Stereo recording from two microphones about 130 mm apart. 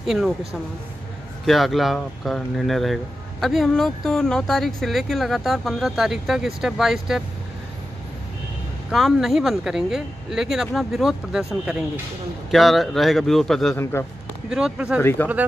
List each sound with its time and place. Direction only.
0.0 s speech: 5° right (ahead or behind)
8.9 s speech: centre (ahead or behind)
15.0 s speech: 15° left (ahead or behind)